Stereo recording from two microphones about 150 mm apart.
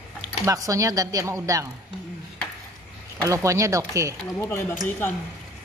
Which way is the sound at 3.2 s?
20° right (ahead or behind).